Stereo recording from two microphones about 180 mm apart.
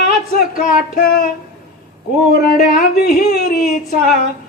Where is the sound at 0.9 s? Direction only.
55° left (ahead or behind).